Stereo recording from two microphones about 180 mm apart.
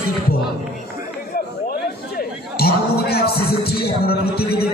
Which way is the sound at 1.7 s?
60° left (ahead or behind).